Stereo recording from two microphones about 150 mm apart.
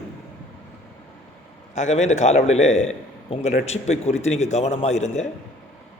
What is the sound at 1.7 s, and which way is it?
A man's voice, 50° left (ahead or behind).